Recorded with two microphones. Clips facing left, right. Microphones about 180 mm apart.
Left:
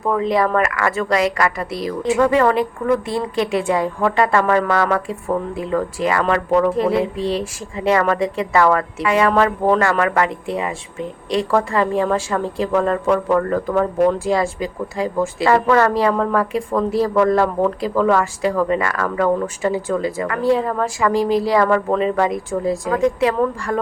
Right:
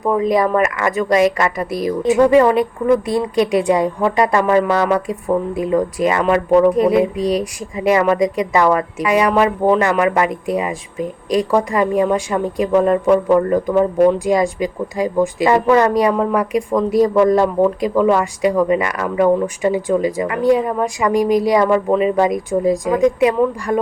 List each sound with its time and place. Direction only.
0.0 s a woman's voice: 15° right (ahead or behind)
7.2 s speech: 25° left (ahead or behind)
7.8 s a woman's voice: 20° right (ahead or behind)
21.1 s speech: 30° left (ahead or behind)
21.4 s speech: 20° right (ahead or behind)